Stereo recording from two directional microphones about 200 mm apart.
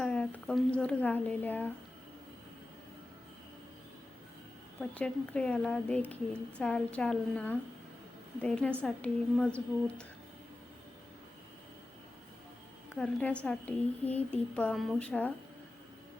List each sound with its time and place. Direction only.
0.0 s a woman's voice: 5° left (ahead or behind)
4.8 s a woman's voice: 5° left (ahead or behind)
13.0 s a woman's voice: 5° left (ahead or behind)